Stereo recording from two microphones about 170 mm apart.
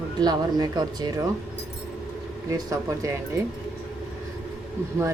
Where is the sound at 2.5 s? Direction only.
20° right (ahead or behind).